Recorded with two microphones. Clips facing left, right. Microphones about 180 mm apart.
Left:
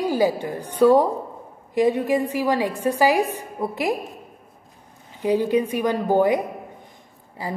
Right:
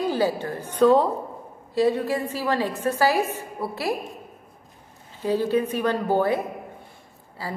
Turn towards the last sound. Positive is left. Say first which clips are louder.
# left 3 dB
turn(degrees=20)  # may be behind; listen again after turning